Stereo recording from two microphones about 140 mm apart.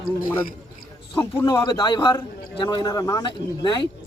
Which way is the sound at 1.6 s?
30° left (ahead or behind).